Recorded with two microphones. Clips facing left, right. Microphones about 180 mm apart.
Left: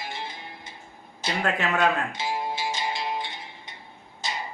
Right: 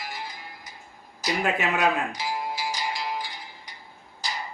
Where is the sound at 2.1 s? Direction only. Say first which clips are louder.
Left 1 dB; 25° left (ahead or behind).